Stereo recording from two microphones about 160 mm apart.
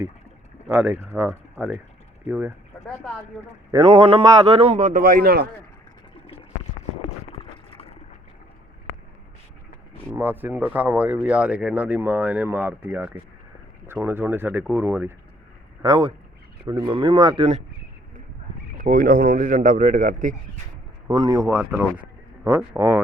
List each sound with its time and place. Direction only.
0.7 s speech: 10° right (ahead or behind)
3.7 s a man's voice: 30° right (ahead or behind); by 5.5 s 70° right (ahead or behind)
7.3 s a sound: 35° left (ahead or behind)
10.1 s speech: 10° right (ahead or behind)
15.8 s a man's voice: 30° right (ahead or behind)
18.8 s speech: 65° right (ahead or behind)
21.1 s speech: 25° right (ahead or behind)